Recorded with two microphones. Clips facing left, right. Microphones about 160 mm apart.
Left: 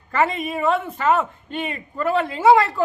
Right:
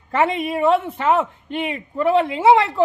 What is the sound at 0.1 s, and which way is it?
Speech, 25° right (ahead or behind).